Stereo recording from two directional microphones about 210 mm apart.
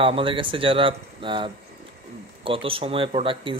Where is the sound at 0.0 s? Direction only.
25° right (ahead or behind).